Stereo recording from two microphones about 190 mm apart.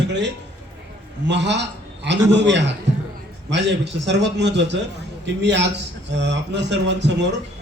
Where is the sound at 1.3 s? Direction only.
65° right (ahead or behind).